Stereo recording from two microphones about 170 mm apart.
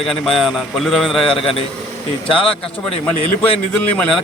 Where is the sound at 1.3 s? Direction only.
30° left (ahead or behind).